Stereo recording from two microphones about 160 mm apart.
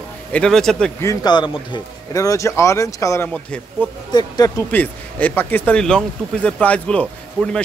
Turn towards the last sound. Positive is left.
turn(degrees=5)  # may be behind; listen again after turning